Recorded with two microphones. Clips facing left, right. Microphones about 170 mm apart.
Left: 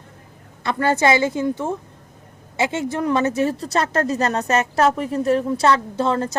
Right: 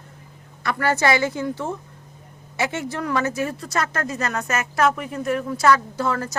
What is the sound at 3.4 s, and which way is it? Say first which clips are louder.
A woman's voice: left 5 dB; 30° left (ahead or behind).